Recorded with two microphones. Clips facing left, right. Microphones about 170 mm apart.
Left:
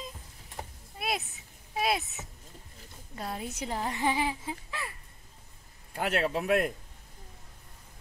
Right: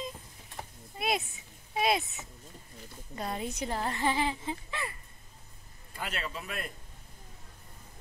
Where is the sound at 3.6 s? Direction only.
10° left (ahead or behind).